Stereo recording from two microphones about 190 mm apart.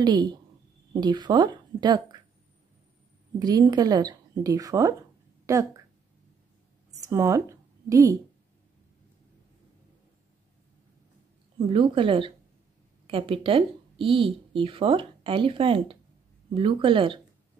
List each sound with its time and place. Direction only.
0.0 s speech: 20° right (ahead or behind)
3.3 s speech: 20° right (ahead or behind)
6.9 s a sound: 15° right (ahead or behind)
11.5 s speech: 30° right (ahead or behind)